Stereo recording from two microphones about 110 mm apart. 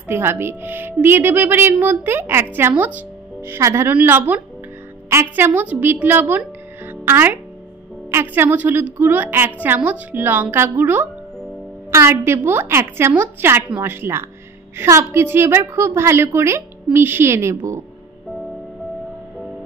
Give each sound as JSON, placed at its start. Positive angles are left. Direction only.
{"t": 0.1, "sound": "a woman's voice", "side_deg": -20}
{"t": 6.9, "sound": "music", "side_deg": -20}
{"t": 8.1, "sound": "a woman's voice", "side_deg": -20}